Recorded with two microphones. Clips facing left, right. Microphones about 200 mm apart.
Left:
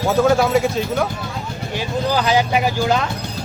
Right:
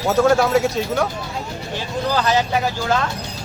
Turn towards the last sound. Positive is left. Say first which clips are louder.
# left 2 dB
turn(degrees=15)  # may be behind; listen again after turning